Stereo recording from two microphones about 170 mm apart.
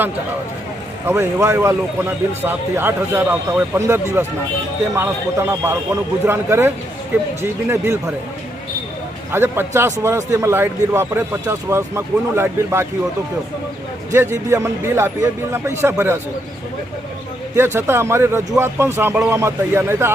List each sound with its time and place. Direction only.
1.0 s a man's voice: 15° right (ahead or behind)
9.3 s a man's voice: 15° right (ahead or behind)
14.1 s a man's voice: 15° right (ahead or behind)
17.5 s a man's voice: 15° right (ahead or behind)